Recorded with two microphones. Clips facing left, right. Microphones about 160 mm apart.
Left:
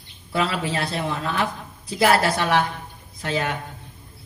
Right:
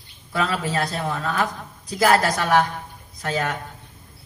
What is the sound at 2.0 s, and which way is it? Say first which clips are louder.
Speech: even; 40° right (ahead or behind).